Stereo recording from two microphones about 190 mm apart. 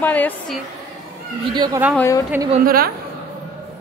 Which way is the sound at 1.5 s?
20° right (ahead or behind).